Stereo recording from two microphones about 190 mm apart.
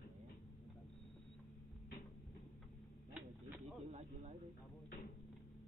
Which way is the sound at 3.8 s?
35° right (ahead or behind).